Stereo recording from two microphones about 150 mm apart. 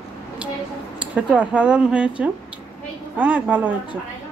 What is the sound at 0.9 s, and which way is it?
Speech, 10° right (ahead or behind).